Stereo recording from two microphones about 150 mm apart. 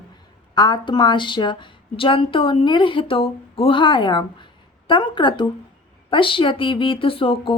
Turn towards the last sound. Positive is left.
turn(degrees=35)  # may be behind; listen again after turning